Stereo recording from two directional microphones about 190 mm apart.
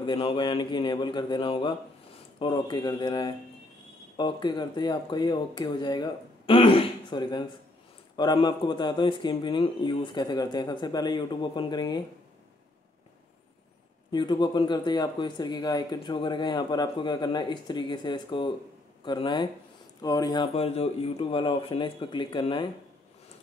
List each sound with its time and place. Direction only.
0.0 s speech: 25° left (ahead or behind)
14.1 s speech: 25° left (ahead or behind)
20.5 s speech: 35° left (ahead or behind)